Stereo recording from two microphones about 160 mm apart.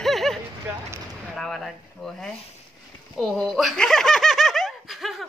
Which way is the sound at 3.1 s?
Centre (ahead or behind).